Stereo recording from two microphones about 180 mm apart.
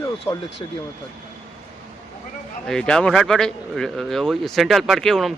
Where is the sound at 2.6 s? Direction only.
5° left (ahead or behind).